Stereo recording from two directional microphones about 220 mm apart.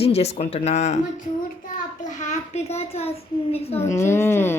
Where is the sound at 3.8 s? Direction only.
10° left (ahead or behind).